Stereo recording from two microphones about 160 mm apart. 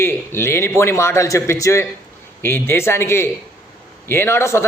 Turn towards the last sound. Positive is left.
turn(degrees=15)  # may be behind; listen again after turning